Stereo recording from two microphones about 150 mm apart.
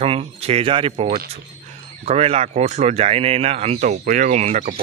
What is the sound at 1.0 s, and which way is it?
Speech, 90° right.